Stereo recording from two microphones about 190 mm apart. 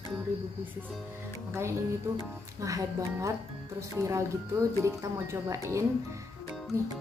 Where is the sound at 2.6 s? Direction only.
15° right (ahead or behind).